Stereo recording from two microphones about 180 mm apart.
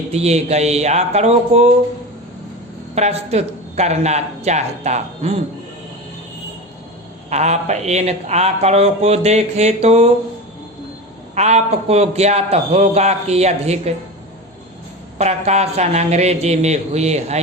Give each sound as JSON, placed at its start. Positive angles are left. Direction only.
{"t": 0.1, "sound": "speech", "side_deg": -35}
{"t": 2.9, "sound": "speech", "side_deg": -35}
{"t": 7.3, "sound": "speech", "side_deg": -40}
{"t": 11.3, "sound": "speech", "side_deg": -40}
{"t": 15.2, "sound": "speech", "side_deg": -35}